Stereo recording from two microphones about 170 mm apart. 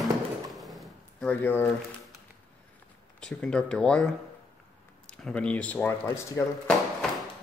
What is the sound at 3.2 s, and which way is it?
Speech, 5° left (ahead or behind).